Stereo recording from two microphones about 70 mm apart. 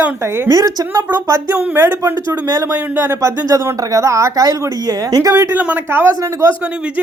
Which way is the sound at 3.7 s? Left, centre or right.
Right.